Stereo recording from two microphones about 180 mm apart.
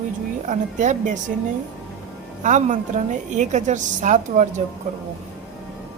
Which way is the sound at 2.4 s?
45° right (ahead or behind).